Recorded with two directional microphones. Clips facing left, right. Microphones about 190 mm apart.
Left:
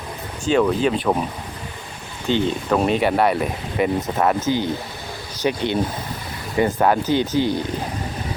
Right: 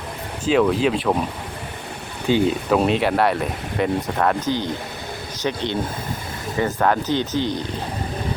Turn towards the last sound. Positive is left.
turn(degrees=10)  # may be behind; listen again after turning